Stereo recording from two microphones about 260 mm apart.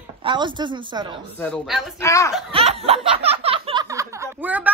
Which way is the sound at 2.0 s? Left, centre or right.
Centre.